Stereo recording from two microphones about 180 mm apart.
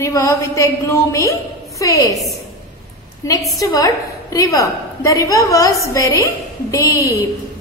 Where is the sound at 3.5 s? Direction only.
20° left (ahead or behind).